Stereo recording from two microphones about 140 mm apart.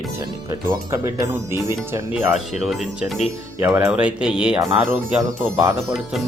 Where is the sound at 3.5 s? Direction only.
15° right (ahead or behind).